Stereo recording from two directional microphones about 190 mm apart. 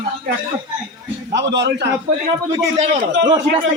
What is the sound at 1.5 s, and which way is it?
Speech, 65° right (ahead or behind).